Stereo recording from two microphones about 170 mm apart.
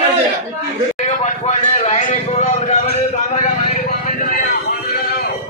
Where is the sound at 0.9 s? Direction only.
40° left (ahead or behind).